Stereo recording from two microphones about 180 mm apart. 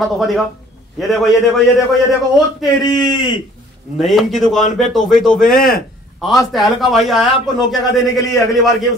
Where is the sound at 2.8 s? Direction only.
20° left (ahead or behind).